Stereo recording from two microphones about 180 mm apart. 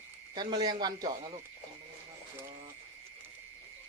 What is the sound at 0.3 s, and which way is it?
Speech, 25° right (ahead or behind).